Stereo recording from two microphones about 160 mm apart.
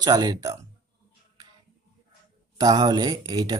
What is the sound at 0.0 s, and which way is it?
Speech, 25° right (ahead or behind).